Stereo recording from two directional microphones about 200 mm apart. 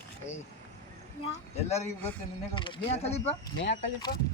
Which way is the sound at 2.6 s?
30° left (ahead or behind).